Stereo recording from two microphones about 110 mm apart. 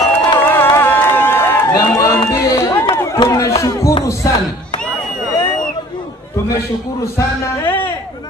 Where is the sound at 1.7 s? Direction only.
30° left (ahead or behind).